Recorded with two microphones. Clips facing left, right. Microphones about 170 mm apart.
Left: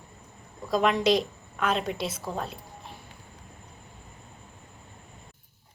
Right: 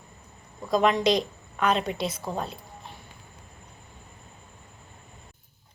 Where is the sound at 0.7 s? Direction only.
5° left (ahead or behind).